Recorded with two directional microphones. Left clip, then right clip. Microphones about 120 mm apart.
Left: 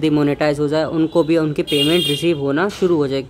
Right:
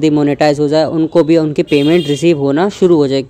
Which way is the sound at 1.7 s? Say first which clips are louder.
Right 4 dB; 45° right (ahead or behind).